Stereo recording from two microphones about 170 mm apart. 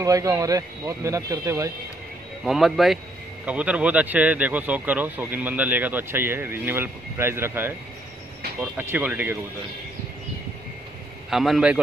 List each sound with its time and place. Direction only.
0.0 s speech: 20° right (ahead or behind)
2.4 s a man's voice: centre (ahead or behind)
8.7 s speech: 10° right (ahead or behind)
11.2 s a man's voice: centre (ahead or behind)